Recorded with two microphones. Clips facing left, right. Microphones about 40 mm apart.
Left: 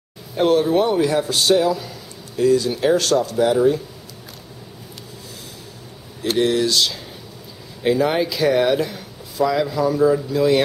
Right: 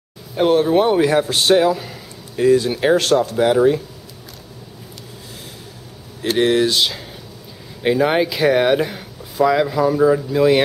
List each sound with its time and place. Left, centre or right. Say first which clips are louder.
0.4 s speech: right 2 dB; centre; by 3.8 s right
6.3 s speech: right 2 dB; right